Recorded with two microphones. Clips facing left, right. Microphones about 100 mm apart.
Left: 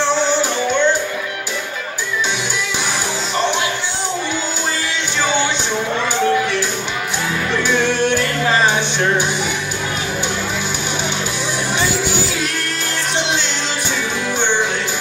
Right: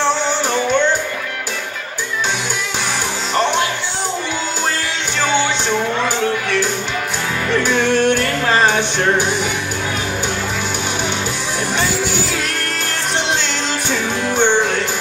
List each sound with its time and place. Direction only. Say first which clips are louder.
7.6 s music: right 2 dB; 50° right (ahead or behind)